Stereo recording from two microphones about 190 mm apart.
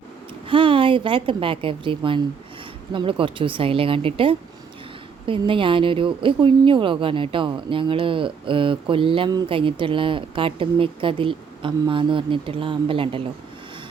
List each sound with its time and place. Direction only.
0.4 s speech: 25° right (ahead or behind)